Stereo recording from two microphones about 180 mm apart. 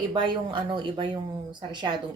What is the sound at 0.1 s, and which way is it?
Speech, 25° right (ahead or behind).